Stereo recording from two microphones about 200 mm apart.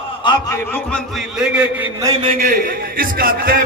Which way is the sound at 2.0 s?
20° right (ahead or behind).